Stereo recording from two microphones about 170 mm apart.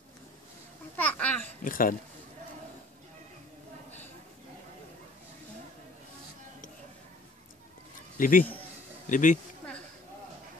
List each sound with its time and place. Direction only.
0.9 s babbling: 10° left (ahead or behind)
1.6 s speech: 55° left (ahead or behind)
8.2 s a man's voice: 55° left (ahead or behind)